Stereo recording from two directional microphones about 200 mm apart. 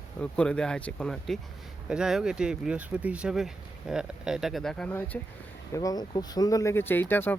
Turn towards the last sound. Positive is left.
turn(degrees=10)  # may be behind; listen again after turning